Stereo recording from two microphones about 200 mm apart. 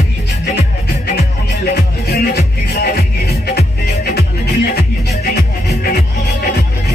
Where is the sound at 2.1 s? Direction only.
55° left (ahead or behind).